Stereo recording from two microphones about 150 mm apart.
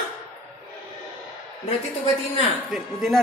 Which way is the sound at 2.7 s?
Centre (ahead or behind).